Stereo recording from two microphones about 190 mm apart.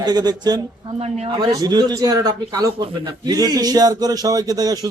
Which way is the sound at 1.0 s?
35° right (ahead or behind).